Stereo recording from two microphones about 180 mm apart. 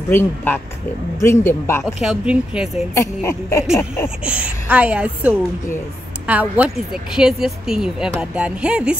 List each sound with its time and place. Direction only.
0.1 s speech: 10° left (ahead or behind)
2.0 s speech: 5° right (ahead or behind)
2.9 s speech: 15° left (ahead or behind)
4.2 s speech: 5° right (ahead or behind)